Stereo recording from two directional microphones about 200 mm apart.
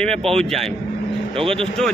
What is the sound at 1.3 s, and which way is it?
Speech, 30° right (ahead or behind).